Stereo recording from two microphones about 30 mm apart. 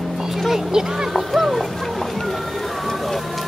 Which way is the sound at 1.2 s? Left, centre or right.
Centre.